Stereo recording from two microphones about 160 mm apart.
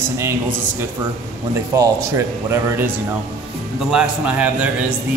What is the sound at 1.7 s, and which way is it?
Speech, 20° right (ahead or behind).